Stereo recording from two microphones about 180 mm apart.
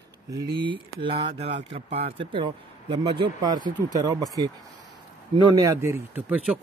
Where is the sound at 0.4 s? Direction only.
25° right (ahead or behind).